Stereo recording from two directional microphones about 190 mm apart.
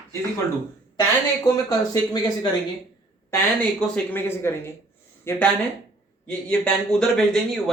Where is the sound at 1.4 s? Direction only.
20° left (ahead or behind).